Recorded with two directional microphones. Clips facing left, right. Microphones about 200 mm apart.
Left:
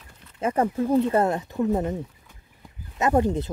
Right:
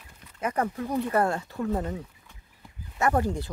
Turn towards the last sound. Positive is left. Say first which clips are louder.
# left 4 dB
turn(degrees=20)  # may be behind; listen again after turning